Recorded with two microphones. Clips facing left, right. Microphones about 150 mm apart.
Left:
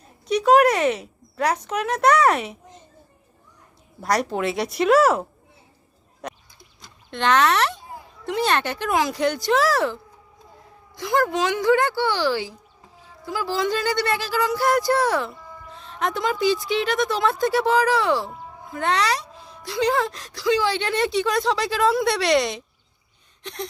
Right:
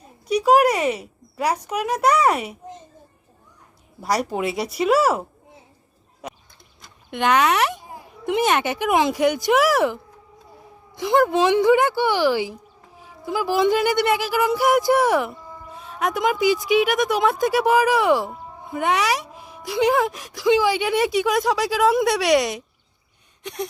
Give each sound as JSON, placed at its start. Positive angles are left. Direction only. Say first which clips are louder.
{"t": 0.3, "sound": "speech", "louder": "even", "side_deg": -10}
{"t": 4.0, "sound": "speech", "louder": "even", "side_deg": -10}
{"t": 6.2, "sound": "a sound", "louder": "left 1 dB", "side_deg": -5}
{"t": 7.1, "sound": "speech", "louder": "right 1 dB", "side_deg": -10}